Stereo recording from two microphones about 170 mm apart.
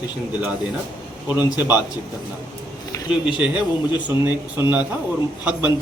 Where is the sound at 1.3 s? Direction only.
10° right (ahead or behind).